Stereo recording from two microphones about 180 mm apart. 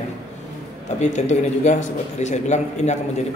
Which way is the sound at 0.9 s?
40° left (ahead or behind).